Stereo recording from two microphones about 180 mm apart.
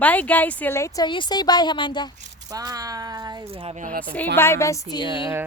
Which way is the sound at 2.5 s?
20° right (ahead or behind).